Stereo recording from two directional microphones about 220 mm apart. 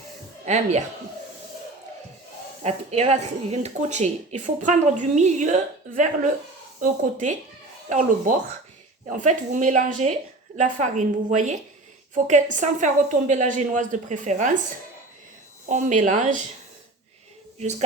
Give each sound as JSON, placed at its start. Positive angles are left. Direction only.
{"t": 0.4, "sound": "speech", "side_deg": -30}
{"t": 2.6, "sound": "speech", "side_deg": -30}
{"t": 12.1, "sound": "speech", "side_deg": -35}
{"t": 15.6, "sound": "speech", "side_deg": -35}
{"t": 17.6, "sound": "speech", "side_deg": -30}